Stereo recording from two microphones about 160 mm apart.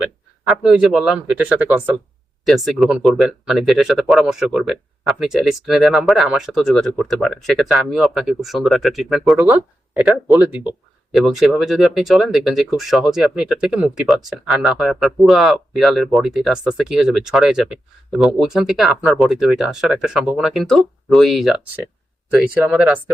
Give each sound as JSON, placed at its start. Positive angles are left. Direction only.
{"t": 0.4, "sound": "speech", "side_deg": -5}